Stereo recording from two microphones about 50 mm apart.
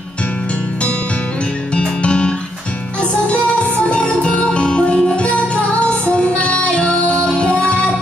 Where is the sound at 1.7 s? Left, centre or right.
Left.